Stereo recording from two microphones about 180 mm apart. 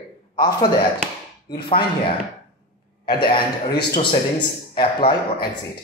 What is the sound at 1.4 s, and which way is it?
Speech, 30° left (ahead or behind).